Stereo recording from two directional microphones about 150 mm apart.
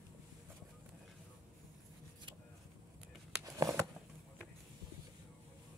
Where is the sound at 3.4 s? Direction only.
20° right (ahead or behind).